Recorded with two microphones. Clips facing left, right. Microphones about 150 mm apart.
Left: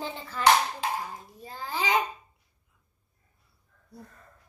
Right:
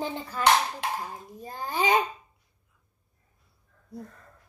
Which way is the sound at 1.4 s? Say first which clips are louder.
Right 3 dB; 45° right (ahead or behind).